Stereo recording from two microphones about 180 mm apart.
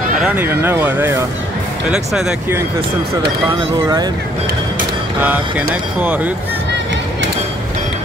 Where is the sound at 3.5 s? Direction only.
25° right (ahead or behind).